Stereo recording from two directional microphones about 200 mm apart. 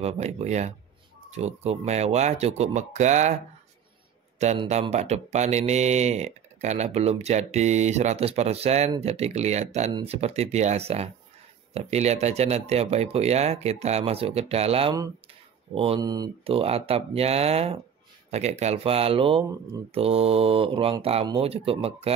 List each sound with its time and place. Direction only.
0.0 s speech: 35° right (ahead or behind)
4.6 s speech: 35° right (ahead or behind)